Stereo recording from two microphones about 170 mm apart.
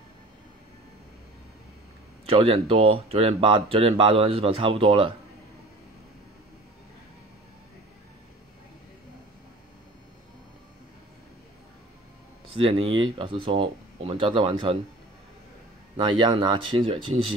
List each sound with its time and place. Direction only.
2.2 s speech: 35° right (ahead or behind)
12.5 s speech: 30° right (ahead or behind)
16.0 s speech: 30° right (ahead or behind)